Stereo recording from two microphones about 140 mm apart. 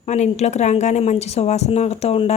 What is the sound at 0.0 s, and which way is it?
A woman's voice, 55° left (ahead or behind).